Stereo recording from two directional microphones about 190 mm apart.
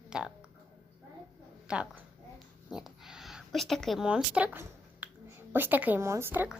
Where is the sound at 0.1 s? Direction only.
5° right (ahead or behind).